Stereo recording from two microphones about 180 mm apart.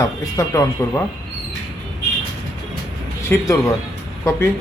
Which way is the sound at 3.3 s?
15° left (ahead or behind).